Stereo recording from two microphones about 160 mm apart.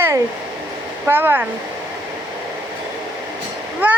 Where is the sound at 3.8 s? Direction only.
10° right (ahead or behind).